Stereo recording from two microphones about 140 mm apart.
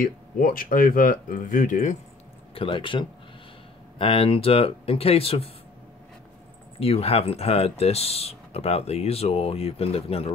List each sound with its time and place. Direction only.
0.0 s speech: 80° left; by 2.0 s 65° left (ahead or behind)
2.5 s speech: 40° left (ahead or behind)
6.8 s speech: 45° left (ahead or behind)